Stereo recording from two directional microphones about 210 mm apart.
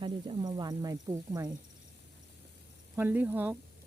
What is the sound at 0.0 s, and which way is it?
Speech, 20° right (ahead or behind).